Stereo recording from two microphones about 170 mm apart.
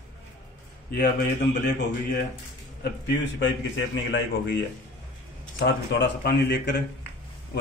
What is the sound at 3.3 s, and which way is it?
A man's voice, 90° left.